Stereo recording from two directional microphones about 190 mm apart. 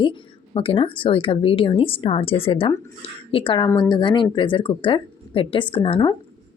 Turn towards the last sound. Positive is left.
turn(degrees=30)  # may be behind; listen again after turning